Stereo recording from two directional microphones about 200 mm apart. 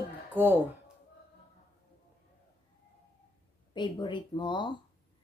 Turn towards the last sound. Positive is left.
turn(degrees=25)  # may be behind; listen again after turning